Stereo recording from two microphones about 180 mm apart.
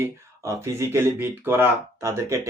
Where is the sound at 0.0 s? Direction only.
15° right (ahead or behind).